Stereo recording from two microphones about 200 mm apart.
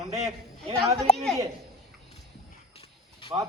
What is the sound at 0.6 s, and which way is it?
Speech, 5° left (ahead or behind).